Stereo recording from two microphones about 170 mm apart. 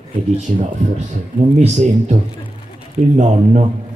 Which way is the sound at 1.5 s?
45° right (ahead or behind).